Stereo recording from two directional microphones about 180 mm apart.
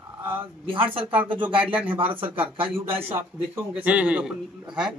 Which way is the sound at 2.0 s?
30° right (ahead or behind).